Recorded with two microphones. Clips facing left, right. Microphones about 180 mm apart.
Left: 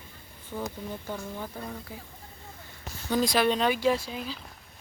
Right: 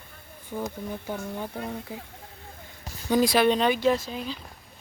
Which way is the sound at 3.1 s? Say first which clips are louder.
Right 4 dB; 5° right (ahead or behind).